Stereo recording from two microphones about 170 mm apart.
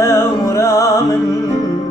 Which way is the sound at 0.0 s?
15° left (ahead or behind).